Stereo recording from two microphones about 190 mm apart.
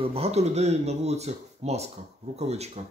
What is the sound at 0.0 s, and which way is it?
Speech, 30° right (ahead or behind).